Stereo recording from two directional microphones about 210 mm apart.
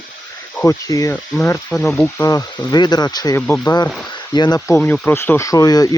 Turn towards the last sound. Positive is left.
turn(degrees=15)  # may be behind; listen again after turning